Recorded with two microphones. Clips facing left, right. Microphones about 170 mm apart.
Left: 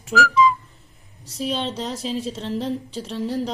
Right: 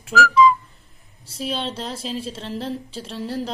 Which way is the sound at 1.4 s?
5° right (ahead or behind).